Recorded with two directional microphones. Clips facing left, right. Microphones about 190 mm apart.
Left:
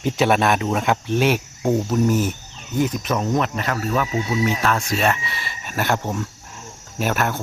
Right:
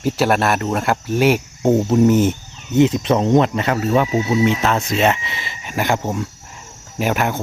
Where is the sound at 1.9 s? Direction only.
25° right (ahead or behind).